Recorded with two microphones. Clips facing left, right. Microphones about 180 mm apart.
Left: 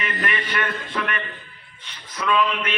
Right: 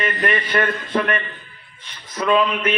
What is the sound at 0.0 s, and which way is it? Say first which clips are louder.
A man's voice: right 5 dB; 40° right (ahead or behind).